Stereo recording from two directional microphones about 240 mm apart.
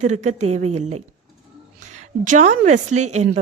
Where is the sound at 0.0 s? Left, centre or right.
Right.